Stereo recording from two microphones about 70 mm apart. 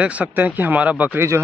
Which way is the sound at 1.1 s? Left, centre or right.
Right.